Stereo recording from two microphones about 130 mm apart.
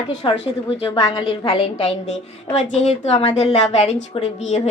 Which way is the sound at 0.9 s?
25° left (ahead or behind).